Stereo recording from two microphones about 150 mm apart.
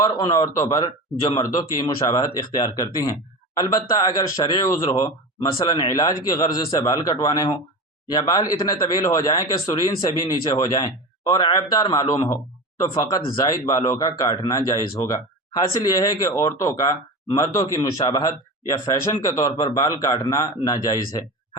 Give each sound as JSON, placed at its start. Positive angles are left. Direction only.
{"t": 0.0, "sound": "speech", "side_deg": 25}